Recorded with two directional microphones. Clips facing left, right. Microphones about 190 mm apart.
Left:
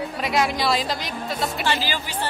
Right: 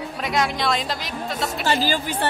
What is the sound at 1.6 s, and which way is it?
Speech, 45° right (ahead or behind).